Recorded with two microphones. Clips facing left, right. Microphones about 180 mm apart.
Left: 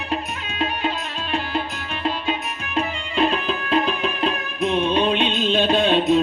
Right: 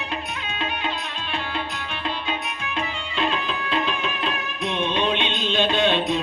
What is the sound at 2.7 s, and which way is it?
Music, 40° left (ahead or behind).